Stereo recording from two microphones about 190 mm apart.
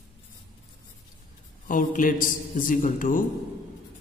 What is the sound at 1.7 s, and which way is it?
A man's voice, 45° left (ahead or behind).